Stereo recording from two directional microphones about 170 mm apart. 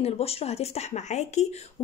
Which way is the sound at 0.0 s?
35° left (ahead or behind).